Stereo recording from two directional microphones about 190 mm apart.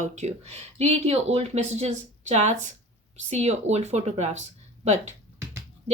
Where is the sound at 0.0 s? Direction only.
35° right (ahead or behind).